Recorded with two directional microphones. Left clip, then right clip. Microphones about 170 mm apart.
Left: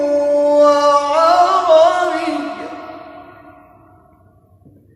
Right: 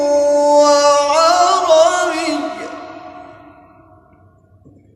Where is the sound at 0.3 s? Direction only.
25° right (ahead or behind).